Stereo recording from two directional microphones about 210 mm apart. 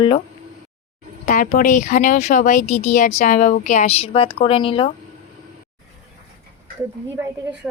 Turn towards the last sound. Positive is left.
turn(degrees=-5)  # may be behind; listen again after turning